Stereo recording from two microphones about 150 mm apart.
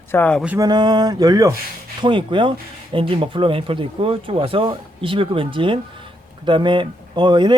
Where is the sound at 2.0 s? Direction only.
35° right (ahead or behind).